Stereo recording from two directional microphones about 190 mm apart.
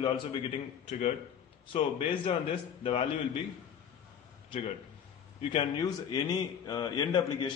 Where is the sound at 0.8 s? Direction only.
35° left (ahead or behind).